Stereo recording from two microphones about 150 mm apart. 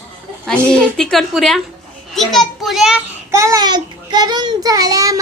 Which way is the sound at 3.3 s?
20° right (ahead or behind).